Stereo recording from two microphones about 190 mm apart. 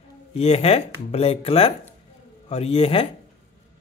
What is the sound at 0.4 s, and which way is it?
Speech, 30° left (ahead or behind).